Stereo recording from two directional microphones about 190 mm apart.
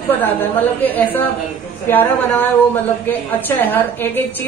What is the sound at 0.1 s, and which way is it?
A woman's voice, 10° left (ahead or behind).